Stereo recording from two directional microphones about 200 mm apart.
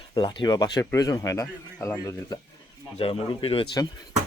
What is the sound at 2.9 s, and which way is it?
Speech, 25° left (ahead or behind).